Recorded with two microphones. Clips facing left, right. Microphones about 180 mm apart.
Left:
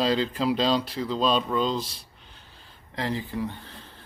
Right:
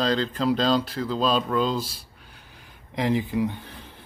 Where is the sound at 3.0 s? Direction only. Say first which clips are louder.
Right 6 dB; 15° right (ahead or behind).